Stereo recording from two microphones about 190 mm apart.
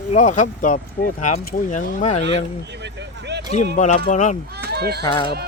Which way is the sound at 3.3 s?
65° right (ahead or behind).